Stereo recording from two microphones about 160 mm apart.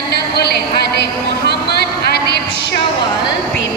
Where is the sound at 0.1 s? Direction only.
90° left.